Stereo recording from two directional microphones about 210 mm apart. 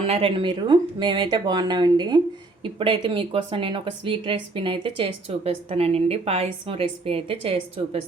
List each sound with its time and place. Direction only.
0.0 s a woman's voice: 25° right (ahead or behind)